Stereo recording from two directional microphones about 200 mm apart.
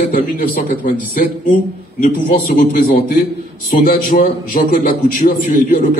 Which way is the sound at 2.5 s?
40° left (ahead or behind).